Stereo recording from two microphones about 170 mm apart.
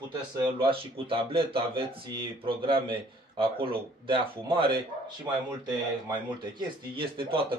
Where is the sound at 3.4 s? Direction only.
30° right (ahead or behind).